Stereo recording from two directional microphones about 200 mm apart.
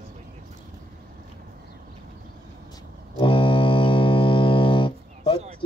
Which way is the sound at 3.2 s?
25° left (ahead or behind).